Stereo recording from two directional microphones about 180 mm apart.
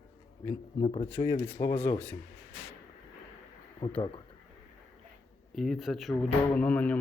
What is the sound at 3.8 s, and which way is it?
Speech, 25° left (ahead or behind).